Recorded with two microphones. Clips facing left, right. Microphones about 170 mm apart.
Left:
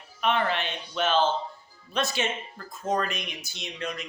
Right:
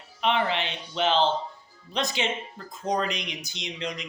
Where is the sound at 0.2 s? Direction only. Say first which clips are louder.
Right 1 dB; 15° right (ahead or behind).